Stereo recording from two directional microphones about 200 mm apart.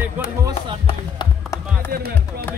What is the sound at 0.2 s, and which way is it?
Speech, 10° right (ahead or behind).